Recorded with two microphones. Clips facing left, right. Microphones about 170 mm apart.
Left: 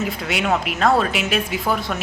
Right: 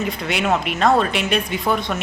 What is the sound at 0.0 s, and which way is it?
A woman's voice, centre (ahead or behind).